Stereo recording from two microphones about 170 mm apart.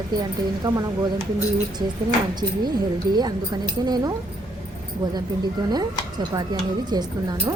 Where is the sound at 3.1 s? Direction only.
25° right (ahead or behind).